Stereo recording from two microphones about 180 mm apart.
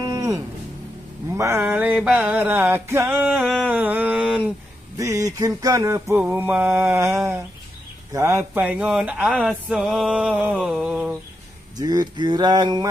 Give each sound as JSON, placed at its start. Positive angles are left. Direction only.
{"t": 0.0, "sound": "music", "side_deg": -20}
{"t": 4.9, "sound": "music", "side_deg": -20}
{"t": 10.5, "sound": "a sound", "side_deg": -5}
{"t": 11.7, "sound": "speech", "side_deg": -20}